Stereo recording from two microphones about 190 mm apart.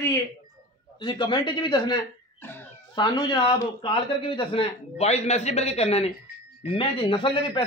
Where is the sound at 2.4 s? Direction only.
10° left (ahead or behind).